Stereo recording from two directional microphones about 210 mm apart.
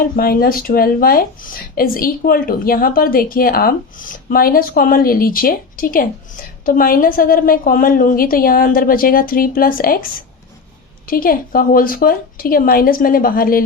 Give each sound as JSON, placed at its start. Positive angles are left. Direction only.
{"t": 0.2, "sound": "speech", "side_deg": 45}